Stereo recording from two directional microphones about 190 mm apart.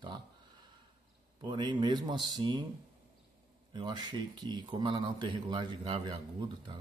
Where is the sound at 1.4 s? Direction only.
25° right (ahead or behind).